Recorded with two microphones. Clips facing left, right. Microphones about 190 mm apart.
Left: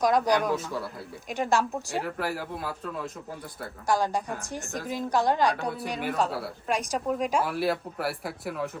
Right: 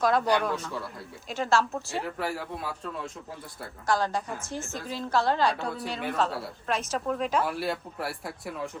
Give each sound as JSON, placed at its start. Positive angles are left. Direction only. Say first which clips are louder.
{"t": 0.0, "sound": "a woman's voice", "louder": "left 1 dB", "side_deg": 15}
{"t": 0.6, "sound": "a man's voice", "louder": "left 2 dB", "side_deg": 0}
{"t": 1.3, "sound": "a woman's voice", "louder": "even", "side_deg": 15}
{"t": 2.0, "sound": "a man's voice", "louder": "left 1 dB", "side_deg": 0}
{"t": 3.8, "sound": "a woman's voice", "louder": "left 1 dB", "side_deg": 10}